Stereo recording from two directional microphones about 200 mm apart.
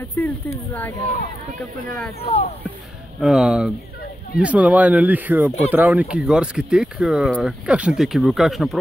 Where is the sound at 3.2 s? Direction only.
Centre (ahead or behind).